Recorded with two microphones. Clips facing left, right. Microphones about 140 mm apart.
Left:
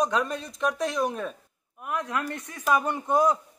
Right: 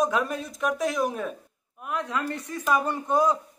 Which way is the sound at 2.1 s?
15° left (ahead or behind).